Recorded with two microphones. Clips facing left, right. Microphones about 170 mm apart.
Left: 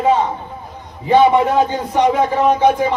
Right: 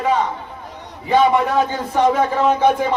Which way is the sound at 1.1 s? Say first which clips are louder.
Left 3 dB; 20° left (ahead or behind).